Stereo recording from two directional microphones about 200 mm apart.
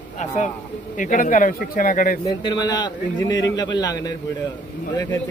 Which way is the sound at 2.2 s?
20° left (ahead or behind).